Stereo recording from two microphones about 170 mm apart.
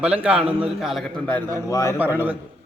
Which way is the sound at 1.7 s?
20° left (ahead or behind).